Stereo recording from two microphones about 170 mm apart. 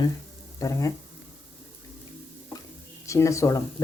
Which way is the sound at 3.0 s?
15° left (ahead or behind).